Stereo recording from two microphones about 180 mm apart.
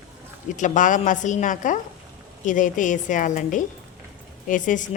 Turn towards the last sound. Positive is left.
turn(degrees=45)  # may be behind; listen again after turning